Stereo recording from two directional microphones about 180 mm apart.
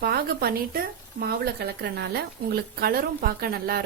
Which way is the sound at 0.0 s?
60° right (ahead or behind).